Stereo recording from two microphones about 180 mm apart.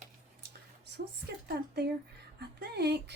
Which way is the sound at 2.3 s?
65° right (ahead or behind).